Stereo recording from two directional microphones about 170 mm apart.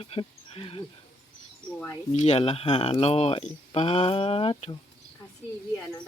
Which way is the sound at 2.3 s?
35° left (ahead or behind).